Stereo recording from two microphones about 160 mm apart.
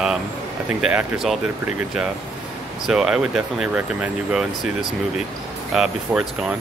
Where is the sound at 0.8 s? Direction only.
5° right (ahead or behind).